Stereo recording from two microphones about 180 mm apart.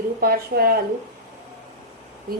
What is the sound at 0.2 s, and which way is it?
Speech, 55° right (ahead or behind).